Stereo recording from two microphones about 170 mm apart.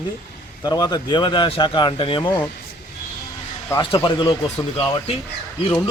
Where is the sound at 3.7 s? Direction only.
15° left (ahead or behind).